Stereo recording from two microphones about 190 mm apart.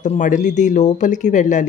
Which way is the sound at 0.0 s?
40° left (ahead or behind).